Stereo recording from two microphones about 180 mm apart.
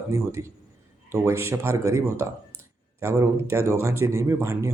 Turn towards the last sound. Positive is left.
turn(degrees=-15)  # may be behind; listen again after turning